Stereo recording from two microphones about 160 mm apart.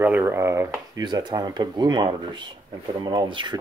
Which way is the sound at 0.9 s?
25° right (ahead or behind).